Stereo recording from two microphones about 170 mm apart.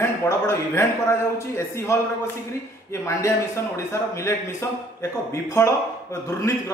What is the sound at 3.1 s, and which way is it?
Speech, 15° left (ahead or behind).